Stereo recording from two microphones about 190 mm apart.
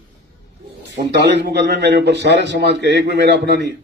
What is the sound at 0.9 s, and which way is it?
A man's voice, 60° right (ahead or behind).